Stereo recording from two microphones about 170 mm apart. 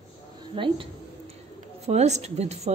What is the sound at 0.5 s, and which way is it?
Speech, 30° right (ahead or behind).